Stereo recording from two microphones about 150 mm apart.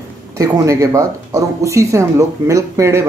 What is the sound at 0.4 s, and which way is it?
Speech, 20° right (ahead or behind).